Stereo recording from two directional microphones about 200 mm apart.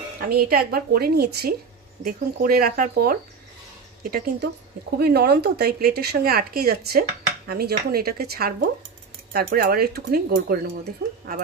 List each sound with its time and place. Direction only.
0.2 s speech: 50° right (ahead or behind)